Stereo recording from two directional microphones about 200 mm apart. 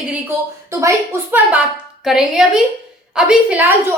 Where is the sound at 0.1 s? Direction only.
15° right (ahead or behind).